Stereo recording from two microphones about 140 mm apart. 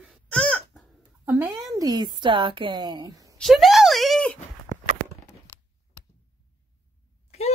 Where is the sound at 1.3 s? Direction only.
10° right (ahead or behind).